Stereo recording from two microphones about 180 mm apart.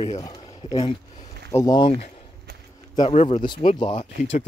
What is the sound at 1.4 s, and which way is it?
Speech, 20° left (ahead or behind).